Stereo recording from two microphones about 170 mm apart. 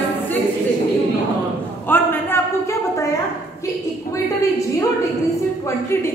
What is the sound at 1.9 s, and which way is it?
Speech, 10° left (ahead or behind).